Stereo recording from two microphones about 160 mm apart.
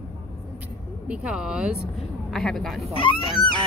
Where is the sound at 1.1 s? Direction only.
5° right (ahead or behind).